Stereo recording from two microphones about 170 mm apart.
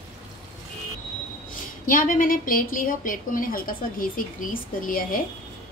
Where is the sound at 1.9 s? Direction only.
50° left (ahead or behind).